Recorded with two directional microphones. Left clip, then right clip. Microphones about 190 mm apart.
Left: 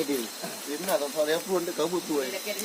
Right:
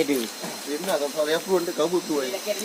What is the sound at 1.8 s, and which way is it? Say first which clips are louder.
Speech: right 4 dB; 20° left (ahead or behind).